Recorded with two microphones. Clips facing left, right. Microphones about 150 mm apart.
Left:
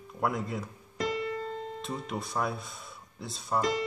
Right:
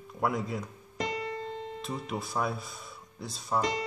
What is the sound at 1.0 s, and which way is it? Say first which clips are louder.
Keyboard: left 2 dB; 40° right (ahead or behind).